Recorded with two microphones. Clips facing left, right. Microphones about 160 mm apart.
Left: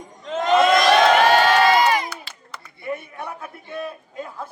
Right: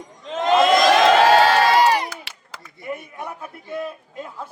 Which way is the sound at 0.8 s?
90° right.